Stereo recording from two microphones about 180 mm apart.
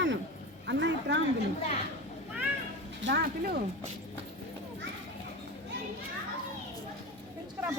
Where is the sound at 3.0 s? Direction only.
70° right (ahead or behind).